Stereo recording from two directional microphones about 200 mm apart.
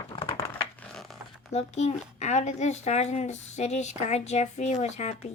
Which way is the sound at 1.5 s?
35° left (ahead or behind).